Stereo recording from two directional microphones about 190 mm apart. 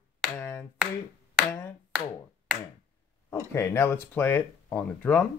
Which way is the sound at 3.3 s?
15° left (ahead or behind).